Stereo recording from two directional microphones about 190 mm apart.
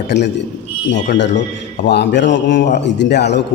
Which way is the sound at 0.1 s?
65° left (ahead or behind).